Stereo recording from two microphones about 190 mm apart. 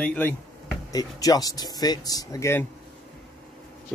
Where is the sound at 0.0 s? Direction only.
10° left (ahead or behind).